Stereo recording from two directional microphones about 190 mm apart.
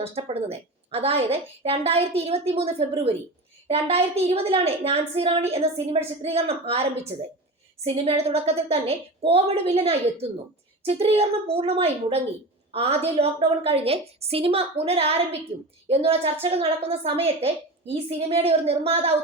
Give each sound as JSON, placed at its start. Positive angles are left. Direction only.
{"t": 0.0, "sound": "a woman's voice", "side_deg": -30}